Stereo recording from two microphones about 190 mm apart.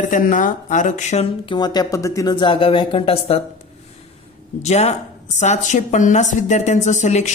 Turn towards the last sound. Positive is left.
turn(degrees=40)  # may be behind; listen again after turning